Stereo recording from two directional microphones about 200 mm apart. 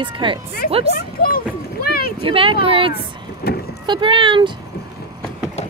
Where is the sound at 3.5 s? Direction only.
50° left (ahead or behind).